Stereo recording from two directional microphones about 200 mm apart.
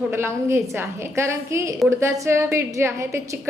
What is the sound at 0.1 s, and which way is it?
A woman's voice, 10° right (ahead or behind).